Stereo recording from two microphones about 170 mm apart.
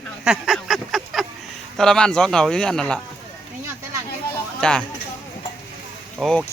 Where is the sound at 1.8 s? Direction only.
5° left (ahead or behind).